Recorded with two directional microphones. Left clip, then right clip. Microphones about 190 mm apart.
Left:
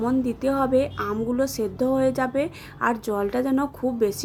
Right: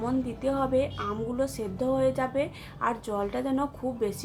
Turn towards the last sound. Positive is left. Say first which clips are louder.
# left 6 dB
turn(degrees=30)  # may be behind; listen again after turning